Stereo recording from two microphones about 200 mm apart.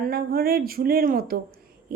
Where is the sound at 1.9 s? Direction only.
50° right (ahead or behind).